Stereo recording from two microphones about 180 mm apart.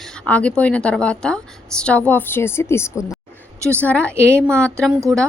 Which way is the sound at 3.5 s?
15° right (ahead or behind).